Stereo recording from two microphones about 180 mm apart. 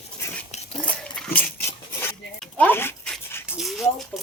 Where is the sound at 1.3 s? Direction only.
10° left (ahead or behind).